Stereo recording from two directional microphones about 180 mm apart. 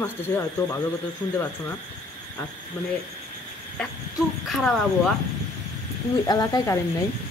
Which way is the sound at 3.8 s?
Centre (ahead or behind).